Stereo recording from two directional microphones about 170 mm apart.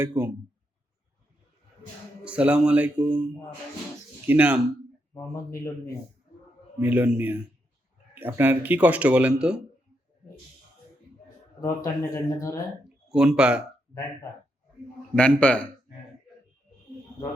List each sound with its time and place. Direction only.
0.0 s speech: 15° right (ahead or behind)
2.2 s speech: 5° right (ahead or behind)
4.3 s speech: 10° right (ahead or behind)
5.1 s speech: 15° left (ahead or behind)
6.7 s speech: 10° right (ahead or behind)
11.6 s speech: 20° left (ahead or behind)
13.1 s speech: 5° right (ahead or behind)
15.1 s speech: 10° left (ahead or behind)